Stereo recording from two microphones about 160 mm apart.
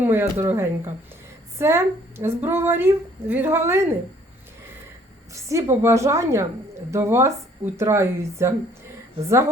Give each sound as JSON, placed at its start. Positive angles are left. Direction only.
{"t": 0.0, "sound": "a woman's voice", "side_deg": -15}
{"t": 5.3, "sound": "a woman's voice", "side_deg": -20}